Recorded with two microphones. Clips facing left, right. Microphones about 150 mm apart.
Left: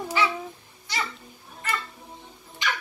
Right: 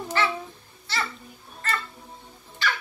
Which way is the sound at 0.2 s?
15° left (ahead or behind).